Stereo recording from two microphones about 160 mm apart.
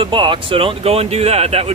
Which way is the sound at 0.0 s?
30° right (ahead or behind).